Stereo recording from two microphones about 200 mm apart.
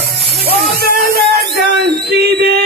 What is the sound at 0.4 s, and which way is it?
Music, 50° right (ahead or behind).